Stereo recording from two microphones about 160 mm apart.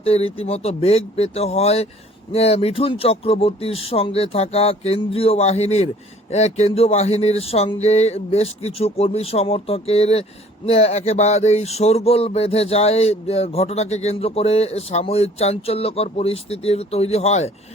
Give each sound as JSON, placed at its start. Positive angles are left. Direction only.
{"t": 0.0, "sound": "speech", "side_deg": 35}